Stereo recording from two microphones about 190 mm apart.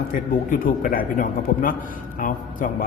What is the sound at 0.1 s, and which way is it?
A man's voice, 45° left (ahead or behind).